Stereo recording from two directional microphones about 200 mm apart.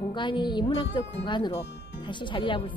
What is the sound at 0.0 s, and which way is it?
Speech, 25° left (ahead or behind).